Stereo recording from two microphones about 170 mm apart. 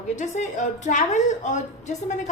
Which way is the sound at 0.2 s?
45° left (ahead or behind).